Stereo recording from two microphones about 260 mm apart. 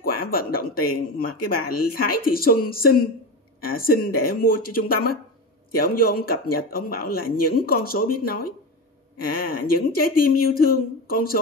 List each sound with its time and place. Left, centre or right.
0.0 s speech: left